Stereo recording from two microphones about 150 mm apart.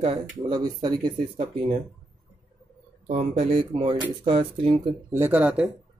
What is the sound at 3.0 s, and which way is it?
Speech, 45° right (ahead or behind).